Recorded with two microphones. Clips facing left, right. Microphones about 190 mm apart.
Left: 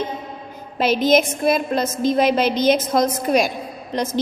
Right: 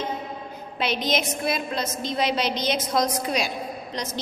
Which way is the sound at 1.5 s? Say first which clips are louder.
Left 8 dB; 50° left (ahead or behind).